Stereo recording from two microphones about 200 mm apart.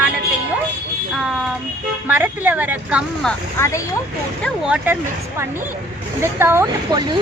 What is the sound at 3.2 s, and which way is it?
Speech, 15° left (ahead or behind).